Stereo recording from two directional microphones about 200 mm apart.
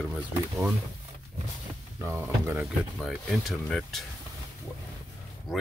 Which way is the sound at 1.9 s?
15° right (ahead or behind).